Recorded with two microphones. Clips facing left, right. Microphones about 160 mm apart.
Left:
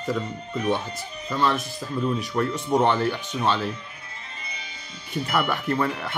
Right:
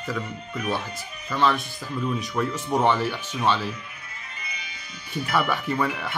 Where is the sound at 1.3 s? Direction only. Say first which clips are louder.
Right 1 dB; 5° left (ahead or behind).